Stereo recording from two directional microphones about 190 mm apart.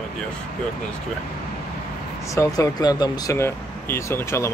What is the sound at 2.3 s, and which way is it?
Speech, 15° left (ahead or behind).